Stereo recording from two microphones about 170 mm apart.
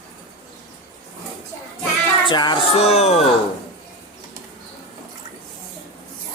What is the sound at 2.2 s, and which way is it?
Music, 25° left (ahead or behind).